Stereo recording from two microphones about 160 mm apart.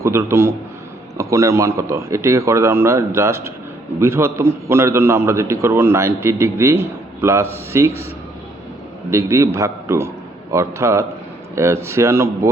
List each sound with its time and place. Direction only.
0.0 s a man's voice: 15° right (ahead or behind)
9.0 s a man's voice: 20° right (ahead or behind)